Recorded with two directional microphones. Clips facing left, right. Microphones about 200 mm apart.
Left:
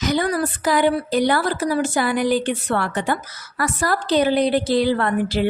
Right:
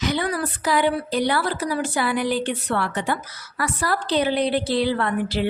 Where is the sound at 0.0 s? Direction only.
45° left (ahead or behind).